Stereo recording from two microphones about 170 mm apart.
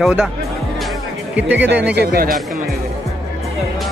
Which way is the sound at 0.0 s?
5° right (ahead or behind).